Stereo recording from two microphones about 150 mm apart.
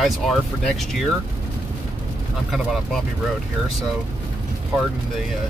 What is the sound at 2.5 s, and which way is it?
Speech, centre (ahead or behind).